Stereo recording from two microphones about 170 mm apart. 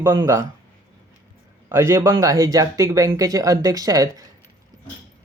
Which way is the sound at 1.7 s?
15° right (ahead or behind).